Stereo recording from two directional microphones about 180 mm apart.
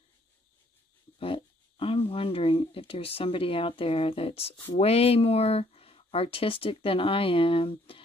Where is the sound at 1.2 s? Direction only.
30° left (ahead or behind).